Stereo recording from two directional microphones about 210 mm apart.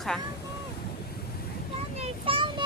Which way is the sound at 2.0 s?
25° right (ahead or behind).